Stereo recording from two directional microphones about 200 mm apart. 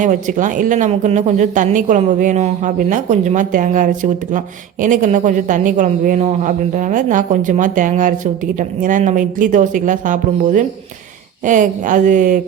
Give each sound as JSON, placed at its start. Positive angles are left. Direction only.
{"t": 0.0, "sound": "speech", "side_deg": -40}